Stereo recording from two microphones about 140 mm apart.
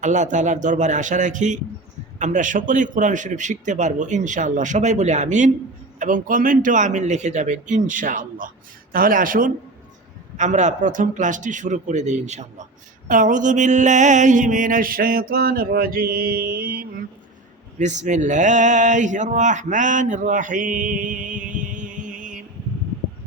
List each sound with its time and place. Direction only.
0.0 s speech: 60° right (ahead or behind)
6.0 s a man's voice: 70° right (ahead or behind)
10.3 s speech: 60° right (ahead or behind)
13.1 s a sound: 65° right (ahead or behind); by 17.0 s 90° right
17.7 s speech: 60° right (ahead or behind)